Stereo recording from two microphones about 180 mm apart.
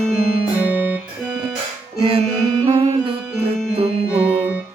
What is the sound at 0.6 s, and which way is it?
Music, 10° right (ahead or behind).